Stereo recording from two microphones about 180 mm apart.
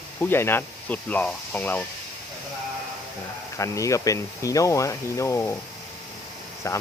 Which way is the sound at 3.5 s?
15° left (ahead or behind).